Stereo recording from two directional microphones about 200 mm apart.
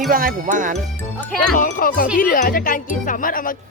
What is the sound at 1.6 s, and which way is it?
Speech, 40° left (ahead or behind).